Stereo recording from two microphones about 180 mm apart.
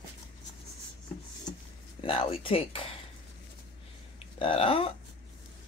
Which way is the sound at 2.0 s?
30° left (ahead or behind).